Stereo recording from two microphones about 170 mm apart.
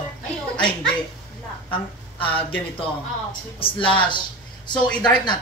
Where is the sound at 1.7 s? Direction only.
30° left (ahead or behind).